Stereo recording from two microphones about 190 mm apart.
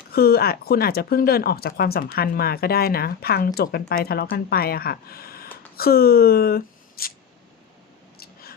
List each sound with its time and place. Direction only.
0.1 s a woman's voice: 55° left (ahead or behind)